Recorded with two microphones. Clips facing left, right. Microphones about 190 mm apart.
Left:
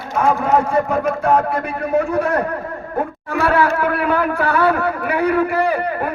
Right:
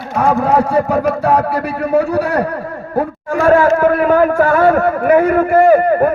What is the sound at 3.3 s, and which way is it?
Speech, 45° right (ahead or behind).